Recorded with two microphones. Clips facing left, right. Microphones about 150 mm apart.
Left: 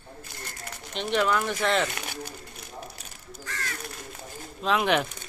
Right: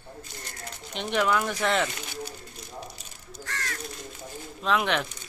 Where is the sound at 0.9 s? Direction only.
15° right (ahead or behind).